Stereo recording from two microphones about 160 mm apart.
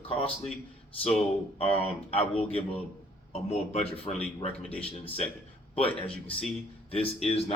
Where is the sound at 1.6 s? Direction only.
35° left (ahead or behind).